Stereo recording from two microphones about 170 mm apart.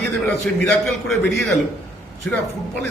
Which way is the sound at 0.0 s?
5° left (ahead or behind).